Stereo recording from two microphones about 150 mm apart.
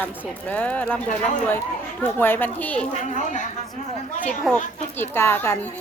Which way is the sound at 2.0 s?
15° left (ahead or behind).